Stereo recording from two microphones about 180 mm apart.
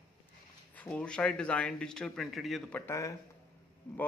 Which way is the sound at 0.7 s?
5° left (ahead or behind).